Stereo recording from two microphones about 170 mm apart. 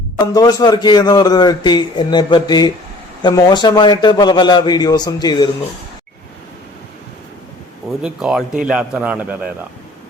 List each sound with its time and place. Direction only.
0.3 s a man's voice: 25° left (ahead or behind)
8.0 s a man's voice: 5° right (ahead or behind)